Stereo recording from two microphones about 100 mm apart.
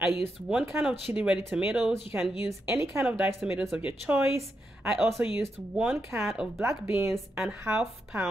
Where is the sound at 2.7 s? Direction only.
30° right (ahead or behind).